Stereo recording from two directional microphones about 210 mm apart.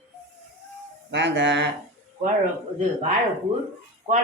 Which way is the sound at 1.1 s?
60° right (ahead or behind).